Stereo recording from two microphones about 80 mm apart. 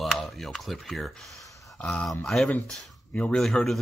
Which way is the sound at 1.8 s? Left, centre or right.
Centre.